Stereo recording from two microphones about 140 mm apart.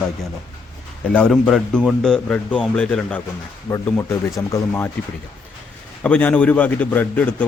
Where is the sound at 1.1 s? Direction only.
5° left (ahead or behind).